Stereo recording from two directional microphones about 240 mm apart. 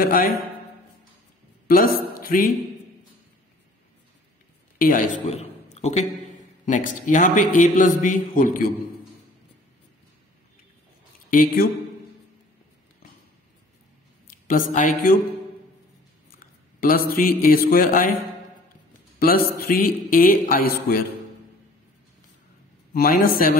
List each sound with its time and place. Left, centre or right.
0.0 s a man's voice: left
1.7 s a man's voice: left
4.7 s a man's voice: left
11.2 s speech: left
14.7 s a man's voice: left
16.8 s a man's voice: left
19.1 s a man's voice: left
22.9 s a man's voice: left